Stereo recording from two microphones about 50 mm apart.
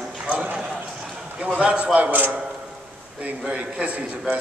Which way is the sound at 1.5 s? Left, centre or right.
Right.